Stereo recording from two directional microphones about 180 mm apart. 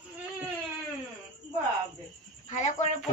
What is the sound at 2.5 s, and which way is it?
Speech, 45° left (ahead or behind).